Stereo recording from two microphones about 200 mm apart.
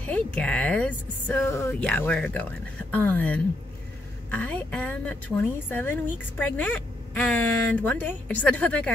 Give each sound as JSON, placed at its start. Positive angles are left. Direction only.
{"t": 0.0, "sound": "a woman's voice", "side_deg": 5}